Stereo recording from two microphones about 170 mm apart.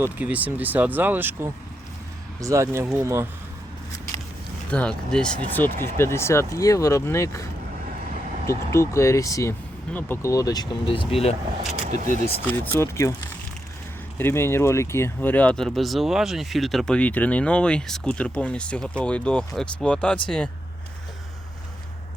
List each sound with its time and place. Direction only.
0.0 s speech: 10° right (ahead or behind)
4.7 s speech: 5° left (ahead or behind)
8.4 s speech: 15° left (ahead or behind); by 11.3 s 35° left (ahead or behind)
11.8 s speech: 45° right (ahead or behind)
12.5 s speech: 15° left (ahead or behind)
14.2 s speech: 15° left (ahead or behind)